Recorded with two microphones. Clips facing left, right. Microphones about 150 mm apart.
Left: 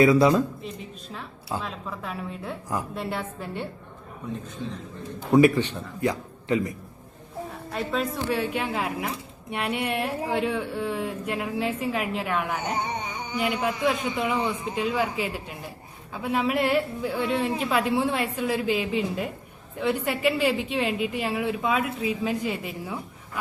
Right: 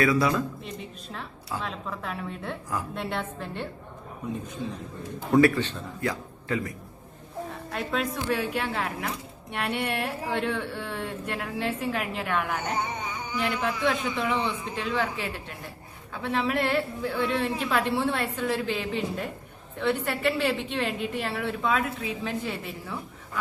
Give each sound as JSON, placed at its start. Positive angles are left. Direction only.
{"t": 0.0, "sound": "a man's voice", "side_deg": 25}
{"t": 1.6, "sound": "a woman's voice", "side_deg": 0}
{"t": 5.3, "sound": "a man's voice", "side_deg": 15}
{"t": 7.7, "sound": "a woman's voice", "side_deg": 0}